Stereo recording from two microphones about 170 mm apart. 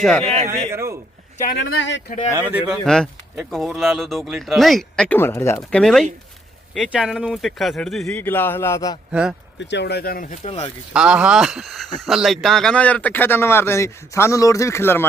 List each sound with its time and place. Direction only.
0.0 s speech: 5° left (ahead or behind)
0.7 s a sound: 15° right (ahead or behind)
1.5 s speech: 90° left
2.3 s speech: 10° right (ahead or behind)
2.8 s speech: 5° left (ahead or behind)
5.8 s speech: 5° left (ahead or behind); by 9.0 s 20° left (ahead or behind)
9.6 s speech: 90° left; by 10.6 s 45° left (ahead or behind)
10.9 s speech: 5° right (ahead or behind); by 15.0 s 15° left (ahead or behind)